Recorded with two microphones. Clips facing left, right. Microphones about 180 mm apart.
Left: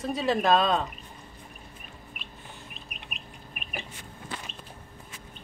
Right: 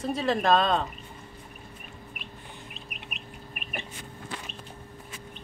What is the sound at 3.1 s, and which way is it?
Chicken, centre (ahead or behind).